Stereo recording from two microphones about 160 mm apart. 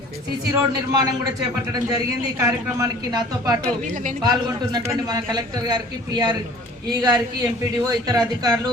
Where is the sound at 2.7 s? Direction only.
25° right (ahead or behind).